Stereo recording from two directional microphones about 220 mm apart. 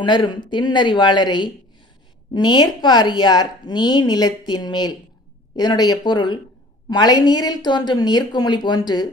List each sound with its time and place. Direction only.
0.0 s a woman's voice: 20° left (ahead or behind)